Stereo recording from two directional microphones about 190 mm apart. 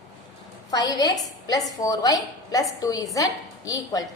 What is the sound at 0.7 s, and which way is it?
A woman's voice, 20° left (ahead or behind).